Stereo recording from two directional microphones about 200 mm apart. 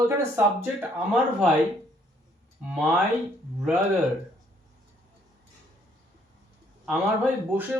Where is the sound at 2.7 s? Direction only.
Centre (ahead or behind).